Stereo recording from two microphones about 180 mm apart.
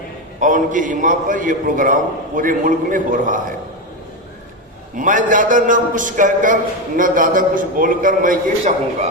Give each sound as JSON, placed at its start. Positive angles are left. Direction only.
{"t": 0.3, "sound": "a man's voice", "side_deg": -45}
{"t": 4.9, "sound": "a man's voice", "side_deg": -45}